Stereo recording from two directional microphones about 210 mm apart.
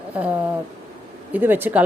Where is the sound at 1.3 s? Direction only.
10° right (ahead or behind).